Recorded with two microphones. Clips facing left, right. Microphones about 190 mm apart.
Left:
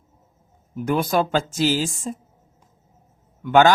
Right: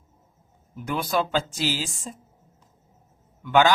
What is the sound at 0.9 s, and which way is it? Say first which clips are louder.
Speech: left 5 dB; 45° left (ahead or behind).